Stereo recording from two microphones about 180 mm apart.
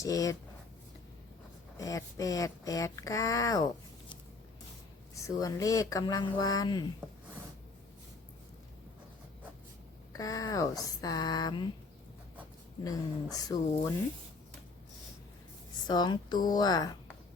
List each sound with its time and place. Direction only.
0.0 s speech: 20° left (ahead or behind)
1.8 s speech: 20° left (ahead or behind)
5.1 s speech: 20° left (ahead or behind)
10.1 s speech: 20° left (ahead or behind)
13.3 s speech: 20° left (ahead or behind)
15.9 s speech: 25° left (ahead or behind)